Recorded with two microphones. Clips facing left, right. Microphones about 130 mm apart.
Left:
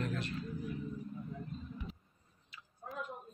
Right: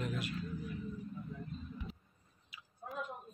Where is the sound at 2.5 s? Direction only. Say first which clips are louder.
Left 1 dB; 10° right (ahead or behind).